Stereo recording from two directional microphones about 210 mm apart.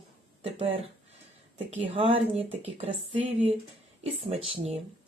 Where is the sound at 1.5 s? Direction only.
25° right (ahead or behind).